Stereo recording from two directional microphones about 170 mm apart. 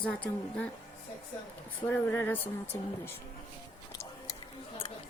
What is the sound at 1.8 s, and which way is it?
A woman's voice, 10° left (ahead or behind).